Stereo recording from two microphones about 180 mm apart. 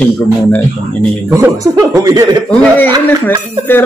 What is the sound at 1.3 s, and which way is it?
Speech, 20° right (ahead or behind).